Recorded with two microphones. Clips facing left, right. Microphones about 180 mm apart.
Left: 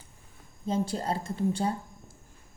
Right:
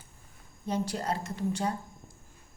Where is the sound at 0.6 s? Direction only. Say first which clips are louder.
Left 2 dB; 25° left (ahead or behind).